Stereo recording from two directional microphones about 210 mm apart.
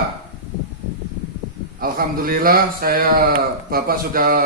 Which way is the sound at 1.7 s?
45° right (ahead or behind).